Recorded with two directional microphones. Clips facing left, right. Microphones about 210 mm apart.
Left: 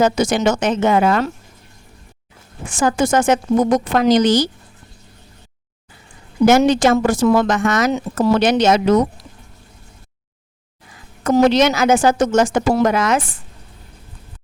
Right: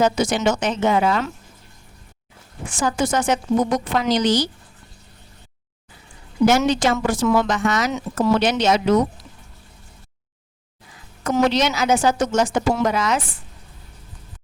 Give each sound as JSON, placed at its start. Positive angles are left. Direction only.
{"t": 0.0, "sound": "speech", "side_deg": 45}
{"t": 2.6, "sound": "speech", "side_deg": 50}
{"t": 6.7, "sound": "speech", "side_deg": 50}
{"t": 11.3, "sound": "speech", "side_deg": 50}